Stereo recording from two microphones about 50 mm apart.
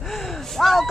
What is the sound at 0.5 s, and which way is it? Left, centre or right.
Speech, centre.